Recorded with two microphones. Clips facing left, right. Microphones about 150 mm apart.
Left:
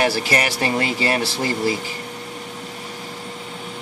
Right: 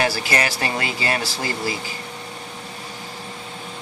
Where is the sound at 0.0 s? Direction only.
25° left (ahead or behind).